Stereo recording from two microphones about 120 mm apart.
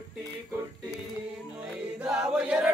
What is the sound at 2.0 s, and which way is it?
Choir, 5° right (ahead or behind).